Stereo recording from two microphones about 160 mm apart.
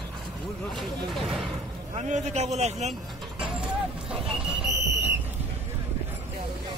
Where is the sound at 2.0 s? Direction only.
45° right (ahead or behind).